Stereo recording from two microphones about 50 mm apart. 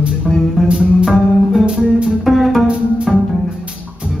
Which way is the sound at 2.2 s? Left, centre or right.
Centre.